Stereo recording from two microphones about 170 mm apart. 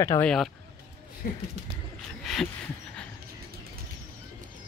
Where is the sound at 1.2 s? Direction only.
70° left (ahead or behind).